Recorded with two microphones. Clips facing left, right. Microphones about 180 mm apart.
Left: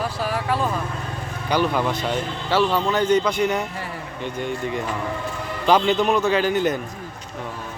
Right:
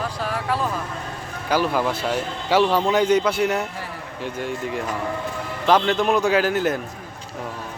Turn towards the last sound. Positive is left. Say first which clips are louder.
# even
turn(degrees=-5)  # may be behind; listen again after turning